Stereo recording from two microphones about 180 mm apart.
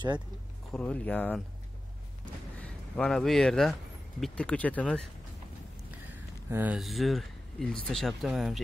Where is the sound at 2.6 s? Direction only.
Centre (ahead or behind).